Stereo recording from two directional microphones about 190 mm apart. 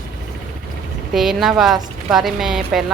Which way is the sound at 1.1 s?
Centre (ahead or behind).